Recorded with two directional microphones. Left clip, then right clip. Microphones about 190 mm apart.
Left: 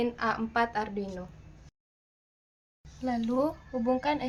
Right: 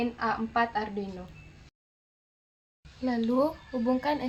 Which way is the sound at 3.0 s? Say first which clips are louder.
Right 2 dB; 20° right (ahead or behind).